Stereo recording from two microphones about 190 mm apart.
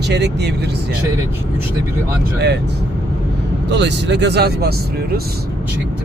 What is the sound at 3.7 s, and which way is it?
Speech, 65° right (ahead or behind).